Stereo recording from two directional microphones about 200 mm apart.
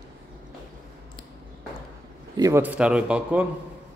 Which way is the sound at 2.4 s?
15° right (ahead or behind).